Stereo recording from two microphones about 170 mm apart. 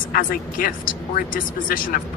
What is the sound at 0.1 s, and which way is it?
A woman's voice, 55° left (ahead or behind).